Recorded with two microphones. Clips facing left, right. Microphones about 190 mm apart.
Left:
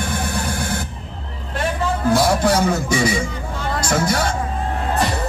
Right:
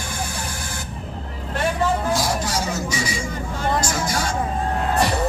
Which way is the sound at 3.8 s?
60° left (ahead or behind).